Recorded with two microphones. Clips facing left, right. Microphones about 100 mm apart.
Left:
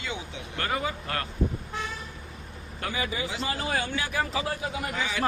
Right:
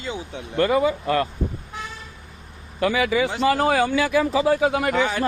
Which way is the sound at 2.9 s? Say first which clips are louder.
Right 10 dB; 90° right.